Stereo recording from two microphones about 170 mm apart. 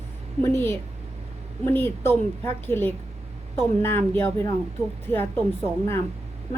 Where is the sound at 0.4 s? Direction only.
15° left (ahead or behind).